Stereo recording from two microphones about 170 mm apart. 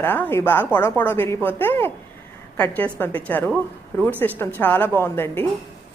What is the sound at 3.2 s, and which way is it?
A woman's voice, 10° left (ahead or behind).